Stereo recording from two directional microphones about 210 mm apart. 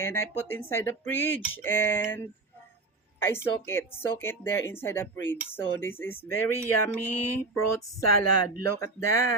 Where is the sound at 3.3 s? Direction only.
10° left (ahead or behind).